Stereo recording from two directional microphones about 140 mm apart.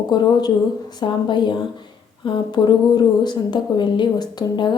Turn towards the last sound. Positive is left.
turn(degrees=30)  # may be behind; listen again after turning